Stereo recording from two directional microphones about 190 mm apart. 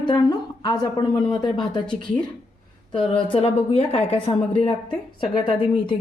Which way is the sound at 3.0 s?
25° left (ahead or behind).